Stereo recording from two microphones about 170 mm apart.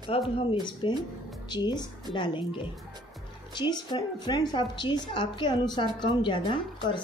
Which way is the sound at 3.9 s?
25° left (ahead or behind).